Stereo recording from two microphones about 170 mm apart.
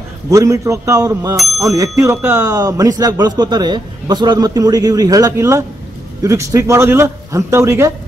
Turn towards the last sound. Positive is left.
turn(degrees=-15)  # may be behind; listen again after turning